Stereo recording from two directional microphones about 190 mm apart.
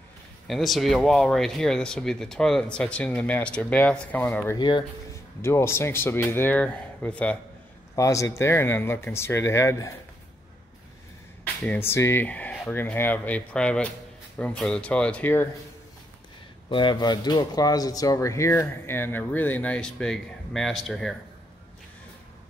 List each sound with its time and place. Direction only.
0.5 s speech: centre (ahead or behind)
4.6 s speech: 25° left (ahead or behind)
5.4 s speech: 15° left (ahead or behind)
11.6 s speech: 10° left (ahead or behind)
16.6 s speech: 25° left (ahead or behind); by 21.2 s centre (ahead or behind)